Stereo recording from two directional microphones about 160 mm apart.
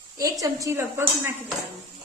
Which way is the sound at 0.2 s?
20° right (ahead or behind).